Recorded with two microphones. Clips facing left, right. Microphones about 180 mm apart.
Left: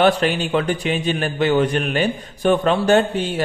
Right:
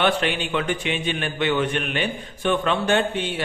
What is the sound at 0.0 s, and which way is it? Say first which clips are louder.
A man's voice: left 5 dB; 40° left (ahead or behind).